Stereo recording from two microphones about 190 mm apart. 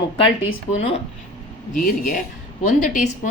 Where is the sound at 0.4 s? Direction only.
30° left (ahead or behind).